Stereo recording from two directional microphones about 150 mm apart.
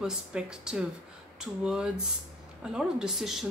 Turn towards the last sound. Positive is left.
turn(degrees=0)  # may be behind; listen again after turning